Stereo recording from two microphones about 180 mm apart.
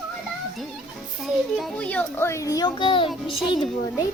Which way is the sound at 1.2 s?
Centre (ahead or behind).